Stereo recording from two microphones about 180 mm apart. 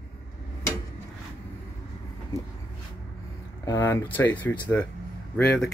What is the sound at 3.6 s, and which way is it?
Speech, 15° left (ahead or behind).